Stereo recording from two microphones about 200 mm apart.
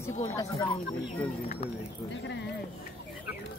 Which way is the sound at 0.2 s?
15° left (ahead or behind).